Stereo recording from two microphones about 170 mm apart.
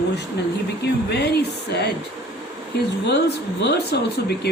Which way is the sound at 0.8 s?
80° left.